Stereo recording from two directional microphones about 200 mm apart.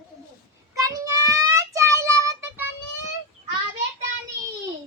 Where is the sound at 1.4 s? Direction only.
15° right (ahead or behind).